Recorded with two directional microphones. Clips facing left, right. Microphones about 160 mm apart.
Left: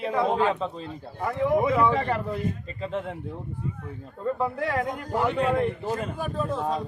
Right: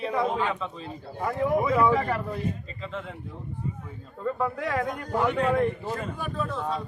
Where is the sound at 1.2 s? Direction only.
Centre (ahead or behind).